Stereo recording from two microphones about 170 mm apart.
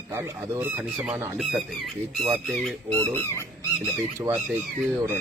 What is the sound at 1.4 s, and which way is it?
Speech, centre (ahead or behind).